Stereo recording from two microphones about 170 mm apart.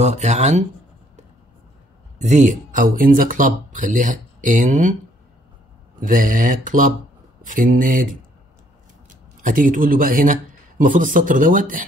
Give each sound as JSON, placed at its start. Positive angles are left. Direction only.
{"t": 0.0, "sound": "speech", "side_deg": -45}
{"t": 2.1, "sound": "speech", "side_deg": -45}
{"t": 5.9, "sound": "speech", "side_deg": -55}
{"t": 9.4, "sound": "speech", "side_deg": -55}